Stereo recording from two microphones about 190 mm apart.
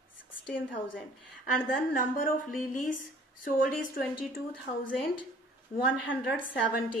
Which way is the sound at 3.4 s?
45° left (ahead or behind).